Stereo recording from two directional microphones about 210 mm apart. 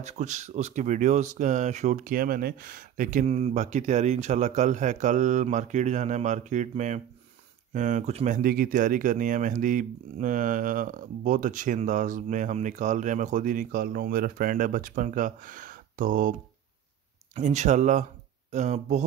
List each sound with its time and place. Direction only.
0.0 s speech: 35° right (ahead or behind)
8.4 s speech: 45° right (ahead or behind)